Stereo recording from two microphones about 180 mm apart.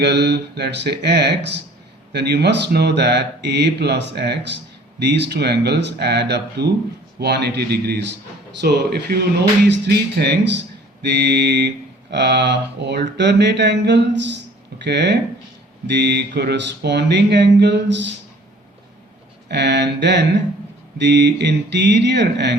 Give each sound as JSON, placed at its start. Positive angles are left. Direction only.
{"t": 0.0, "sound": "speech", "side_deg": -70}
{"t": 9.6, "sound": "speech", "side_deg": -75}
{"t": 19.5, "sound": "speech", "side_deg": -75}